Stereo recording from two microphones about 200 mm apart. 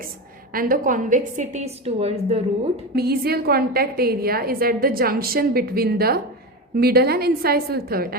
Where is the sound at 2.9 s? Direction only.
50° right (ahead or behind).